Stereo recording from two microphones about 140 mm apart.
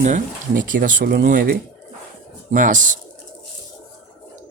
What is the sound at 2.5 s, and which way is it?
Speech, 65° right (ahead or behind).